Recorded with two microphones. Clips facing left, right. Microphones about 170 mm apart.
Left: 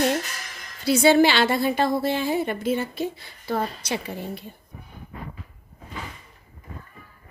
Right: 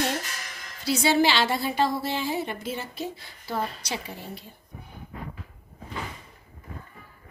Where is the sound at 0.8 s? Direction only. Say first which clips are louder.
Left 5 dB; 55° left (ahead or behind).